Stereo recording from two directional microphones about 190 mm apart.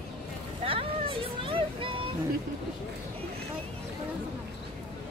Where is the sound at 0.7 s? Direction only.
30° right (ahead or behind).